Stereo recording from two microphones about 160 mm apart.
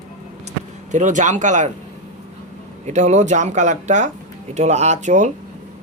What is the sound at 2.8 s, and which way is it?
Speech, 45° right (ahead or behind).